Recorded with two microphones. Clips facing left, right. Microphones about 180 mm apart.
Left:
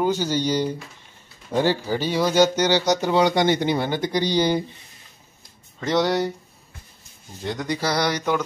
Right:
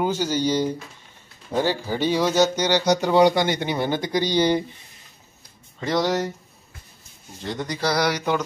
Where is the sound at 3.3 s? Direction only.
20° left (ahead or behind).